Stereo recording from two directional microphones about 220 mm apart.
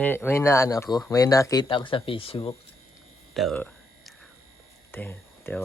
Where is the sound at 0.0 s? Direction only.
10° left (ahead or behind); by 2.6 s 25° left (ahead or behind).